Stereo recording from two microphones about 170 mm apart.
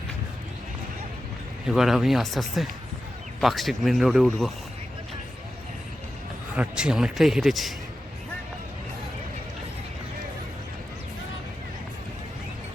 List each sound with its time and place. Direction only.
1.6 s speech: centre (ahead or behind)
6.6 s speech: 5° right (ahead or behind)